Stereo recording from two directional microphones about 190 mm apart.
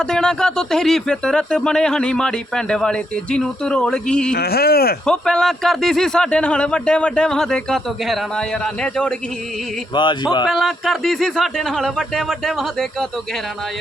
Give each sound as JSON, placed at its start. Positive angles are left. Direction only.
{"t": 0.0, "sound": "speech", "side_deg": 5}
{"t": 4.4, "sound": "speech", "side_deg": 55}
{"t": 5.0, "sound": "speech", "side_deg": 5}
{"t": 9.9, "sound": "speech", "side_deg": 25}
{"t": 10.4, "sound": "speech", "side_deg": 0}